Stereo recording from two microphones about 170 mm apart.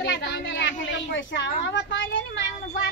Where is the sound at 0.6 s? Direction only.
90° left.